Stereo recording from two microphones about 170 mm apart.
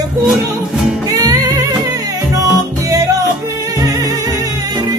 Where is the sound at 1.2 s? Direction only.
20° right (ahead or behind).